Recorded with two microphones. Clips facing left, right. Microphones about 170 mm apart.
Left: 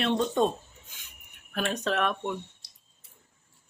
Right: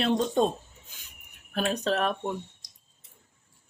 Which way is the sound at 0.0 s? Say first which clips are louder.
Right 1 dB; 35° right (ahead or behind).